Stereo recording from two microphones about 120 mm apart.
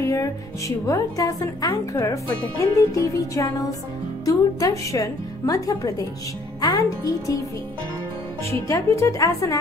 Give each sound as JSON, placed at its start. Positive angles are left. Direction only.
{"t": 0.0, "sound": "speech", "side_deg": 25}
{"t": 2.6, "sound": "music", "side_deg": 25}
{"t": 4.2, "sound": "a child's voice", "side_deg": 30}
{"t": 8.5, "sound": "music", "side_deg": 25}